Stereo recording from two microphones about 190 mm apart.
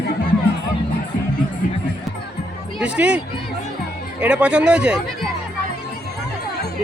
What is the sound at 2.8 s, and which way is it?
Speech, 5° right (ahead or behind).